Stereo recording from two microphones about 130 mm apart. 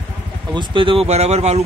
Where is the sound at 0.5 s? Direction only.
40° right (ahead or behind); by 1.6 s 55° right (ahead or behind).